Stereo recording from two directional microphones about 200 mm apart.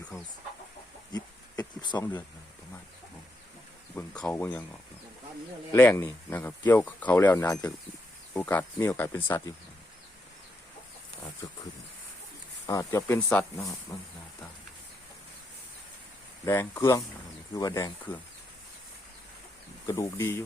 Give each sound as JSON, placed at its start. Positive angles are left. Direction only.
{"t": 1.1, "sound": "insect", "side_deg": 20}
{"t": 3.9, "sound": "speech", "side_deg": 5}
{"t": 5.7, "sound": "speech", "side_deg": 10}
{"t": 12.6, "sound": "speech", "side_deg": 15}
{"t": 16.5, "sound": "speech", "side_deg": 15}
{"t": 19.9, "sound": "speech", "side_deg": 15}